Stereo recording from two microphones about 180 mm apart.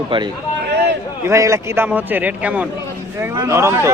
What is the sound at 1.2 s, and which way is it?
A man's voice, 15° right (ahead or behind).